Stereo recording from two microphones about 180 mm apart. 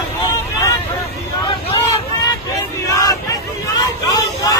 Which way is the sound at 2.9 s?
20° left (ahead or behind).